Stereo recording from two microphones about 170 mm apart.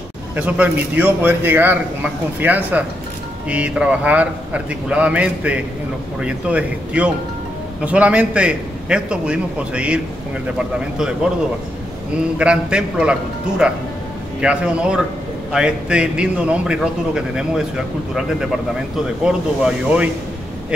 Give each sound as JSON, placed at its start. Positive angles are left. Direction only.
{"t": 0.4, "sound": "a man's voice", "side_deg": -10}
{"t": 12.2, "sound": "a man's voice", "side_deg": -5}